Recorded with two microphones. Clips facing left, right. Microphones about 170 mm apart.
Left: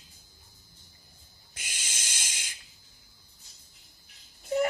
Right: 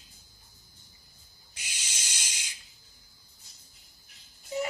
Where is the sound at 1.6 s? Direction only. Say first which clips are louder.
Left 1 dB; 50° left (ahead or behind).